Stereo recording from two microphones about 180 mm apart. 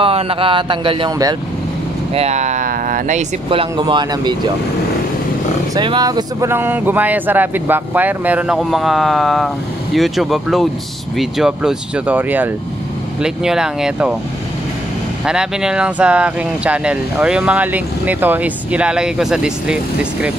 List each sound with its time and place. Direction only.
0.0 s speech: 30° right (ahead or behind)
2.1 s speech: 40° right (ahead or behind)
3.4 s speech: 25° right (ahead or behind)
5.8 s speech: 25° right (ahead or behind); by 14.1 s 5° right (ahead or behind)
15.2 s speech: 5° right (ahead or behind)